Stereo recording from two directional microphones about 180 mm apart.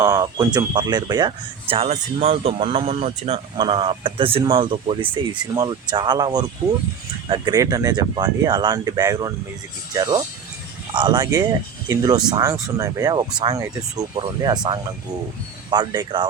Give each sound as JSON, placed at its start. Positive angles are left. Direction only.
{"t": 0.0, "sound": "speech", "side_deg": -20}